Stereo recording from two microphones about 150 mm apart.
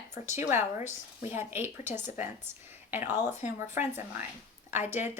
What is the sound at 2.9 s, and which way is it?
A woman's voice, 15° right (ahead or behind).